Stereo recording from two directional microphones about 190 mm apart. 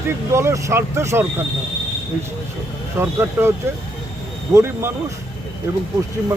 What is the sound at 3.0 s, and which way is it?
A man's voice, 15° right (ahead or behind).